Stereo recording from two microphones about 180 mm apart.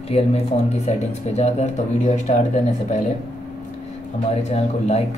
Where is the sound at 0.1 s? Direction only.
35° left (ahead or behind).